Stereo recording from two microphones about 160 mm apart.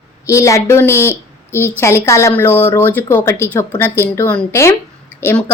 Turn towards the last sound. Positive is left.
turn(degrees=15)  # may be behind; listen again after turning